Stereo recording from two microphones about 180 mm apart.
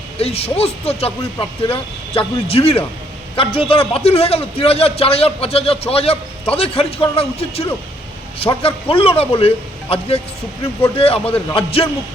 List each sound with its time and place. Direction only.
0.2 s a man's voice: 35° left (ahead or behind)